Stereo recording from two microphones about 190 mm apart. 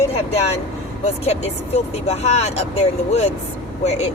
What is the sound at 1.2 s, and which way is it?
Speech, 35° left (ahead or behind).